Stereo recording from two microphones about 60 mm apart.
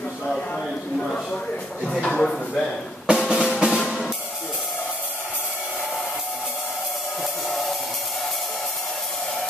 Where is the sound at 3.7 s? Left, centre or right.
Centre.